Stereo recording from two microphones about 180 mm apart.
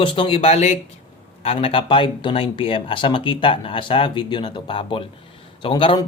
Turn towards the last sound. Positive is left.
turn(degrees=25)  # may be behind; listen again after turning